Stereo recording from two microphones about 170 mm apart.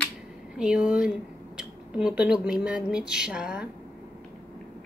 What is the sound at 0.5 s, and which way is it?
Speech, 5° right (ahead or behind).